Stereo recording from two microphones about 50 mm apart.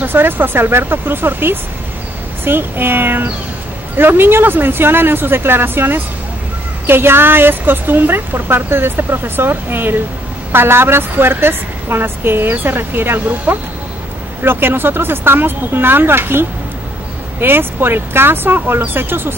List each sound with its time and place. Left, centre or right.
0.0 s a woman's voice: right